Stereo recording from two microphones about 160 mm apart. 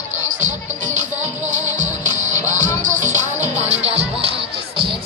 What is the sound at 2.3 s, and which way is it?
Music, 50° right (ahead or behind).